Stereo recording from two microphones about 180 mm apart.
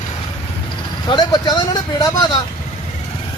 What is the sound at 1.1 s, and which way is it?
Speech, 25° left (ahead or behind).